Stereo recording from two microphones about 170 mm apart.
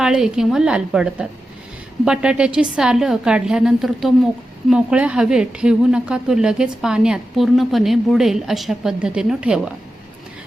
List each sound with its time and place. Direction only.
0.0 s a woman's voice: 5° right (ahead or behind)